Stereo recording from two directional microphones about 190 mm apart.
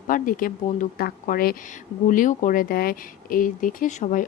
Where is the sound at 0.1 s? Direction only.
45° left (ahead or behind).